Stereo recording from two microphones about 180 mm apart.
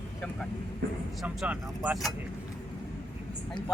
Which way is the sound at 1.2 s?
5° right (ahead or behind).